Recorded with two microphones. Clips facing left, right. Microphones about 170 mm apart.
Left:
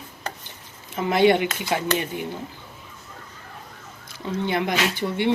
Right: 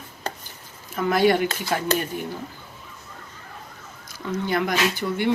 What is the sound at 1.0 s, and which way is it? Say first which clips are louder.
Speech: left 1 dB; 20° left (ahead or behind).